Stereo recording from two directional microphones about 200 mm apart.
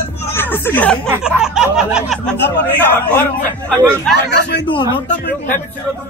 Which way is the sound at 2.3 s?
60° left (ahead or behind).